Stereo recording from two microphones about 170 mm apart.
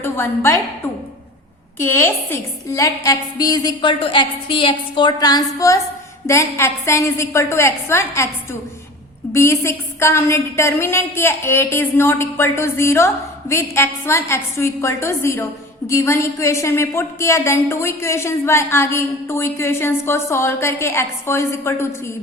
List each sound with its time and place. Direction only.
0.0 s a woman's voice: 15° left (ahead or behind)
1.8 s a woman's voice: 10° left (ahead or behind)
9.3 s a woman's voice: 15° left (ahead or behind)